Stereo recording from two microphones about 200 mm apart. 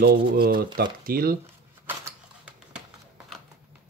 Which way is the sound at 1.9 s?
10° right (ahead or behind).